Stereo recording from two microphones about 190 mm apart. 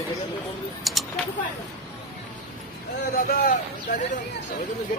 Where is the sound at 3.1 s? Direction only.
50° left (ahead or behind).